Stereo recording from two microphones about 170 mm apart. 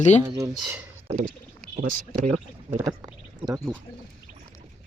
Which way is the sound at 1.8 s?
50° right (ahead or behind).